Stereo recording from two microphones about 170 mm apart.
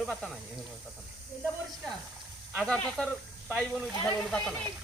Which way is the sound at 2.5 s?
5° left (ahead or behind).